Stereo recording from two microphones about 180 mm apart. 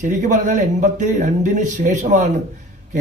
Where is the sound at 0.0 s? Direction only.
45° right (ahead or behind).